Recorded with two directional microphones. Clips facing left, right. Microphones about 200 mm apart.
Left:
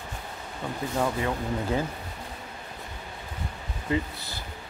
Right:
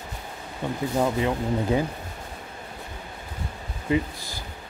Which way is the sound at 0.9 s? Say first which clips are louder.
Right 3 dB; 15° right (ahead or behind).